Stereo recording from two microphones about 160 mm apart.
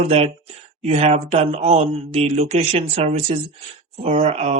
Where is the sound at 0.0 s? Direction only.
40° right (ahead or behind).